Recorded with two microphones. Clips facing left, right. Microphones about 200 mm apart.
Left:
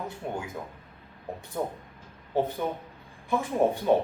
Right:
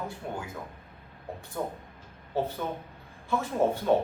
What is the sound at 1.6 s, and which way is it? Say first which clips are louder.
Speech: left 2 dB; 15° left (ahead or behind).